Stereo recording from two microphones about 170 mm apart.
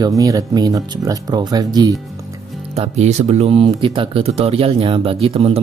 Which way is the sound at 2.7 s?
40° right (ahead or behind).